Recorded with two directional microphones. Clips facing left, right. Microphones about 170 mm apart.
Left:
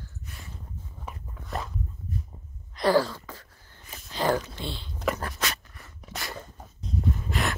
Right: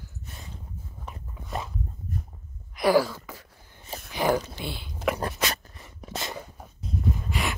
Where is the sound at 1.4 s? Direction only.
Centre (ahead or behind).